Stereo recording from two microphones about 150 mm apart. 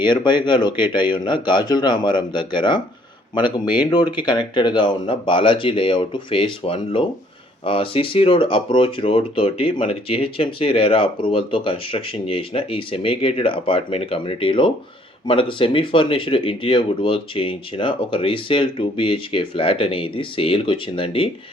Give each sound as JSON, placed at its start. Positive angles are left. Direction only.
{"t": 0.0, "sound": "speech", "side_deg": 30}